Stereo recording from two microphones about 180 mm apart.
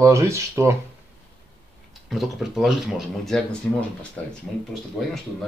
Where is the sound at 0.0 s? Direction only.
15° right (ahead or behind).